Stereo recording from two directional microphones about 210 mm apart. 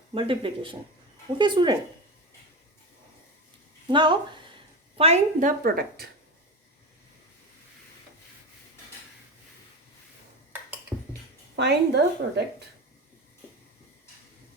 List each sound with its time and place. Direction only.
0.1 s speech: 25° right (ahead or behind)
3.9 s a woman's voice: 20° right (ahead or behind); by 6.1 s 45° right (ahead or behind)
11.5 s a woman's voice: 55° right (ahead or behind)